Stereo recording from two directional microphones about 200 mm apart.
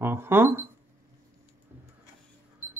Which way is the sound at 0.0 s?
10° right (ahead or behind).